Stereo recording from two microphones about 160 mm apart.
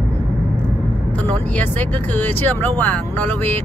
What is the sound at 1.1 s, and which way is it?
Speech, 10° left (ahead or behind).